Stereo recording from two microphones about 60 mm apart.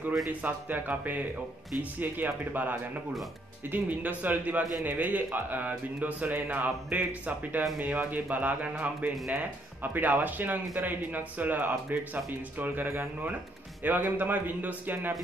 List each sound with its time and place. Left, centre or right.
0.3 s speech: right